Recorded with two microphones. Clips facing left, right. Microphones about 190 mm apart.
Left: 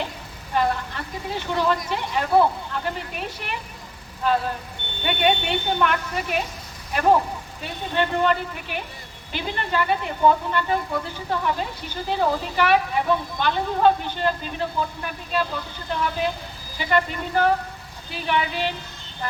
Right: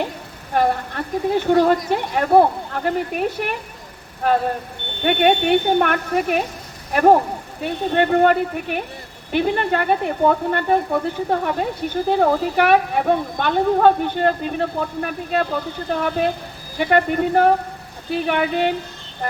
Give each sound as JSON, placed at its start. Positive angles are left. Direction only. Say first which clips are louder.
{"t": 0.5, "sound": "a woman's voice", "louder": "right 4 dB", "side_deg": -55}